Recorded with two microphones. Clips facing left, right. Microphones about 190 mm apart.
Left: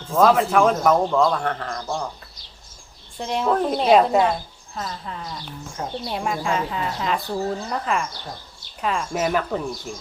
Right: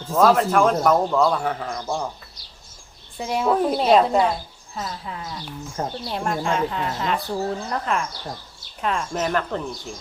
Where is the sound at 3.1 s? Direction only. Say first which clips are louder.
Right 1 dB; 5° right (ahead or behind).